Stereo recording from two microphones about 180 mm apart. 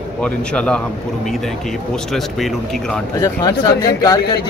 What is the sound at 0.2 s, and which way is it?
Speech, 5° left (ahead or behind).